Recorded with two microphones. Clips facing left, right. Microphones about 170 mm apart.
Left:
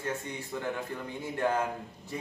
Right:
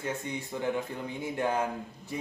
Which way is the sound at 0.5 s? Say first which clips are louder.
Right 1 dB; 20° right (ahead or behind).